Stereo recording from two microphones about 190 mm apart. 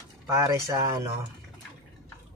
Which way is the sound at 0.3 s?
15° right (ahead or behind).